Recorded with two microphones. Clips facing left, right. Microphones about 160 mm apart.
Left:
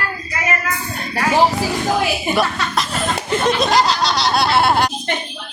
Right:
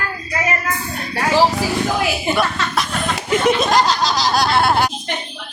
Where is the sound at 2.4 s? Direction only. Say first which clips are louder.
Even; centre (ahead or behind).